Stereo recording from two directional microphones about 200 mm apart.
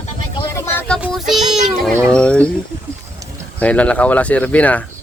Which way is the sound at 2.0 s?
5° left (ahead or behind).